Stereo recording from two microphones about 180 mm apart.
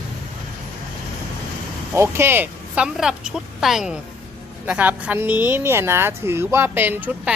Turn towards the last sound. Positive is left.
turn(degrees=-10)  # may be behind; listen again after turning